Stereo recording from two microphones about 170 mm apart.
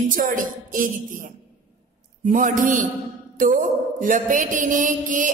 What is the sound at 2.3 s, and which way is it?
A woman's voice, 50° right (ahead or behind).